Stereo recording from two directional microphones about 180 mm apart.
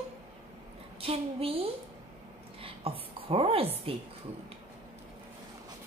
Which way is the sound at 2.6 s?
30° right (ahead or behind).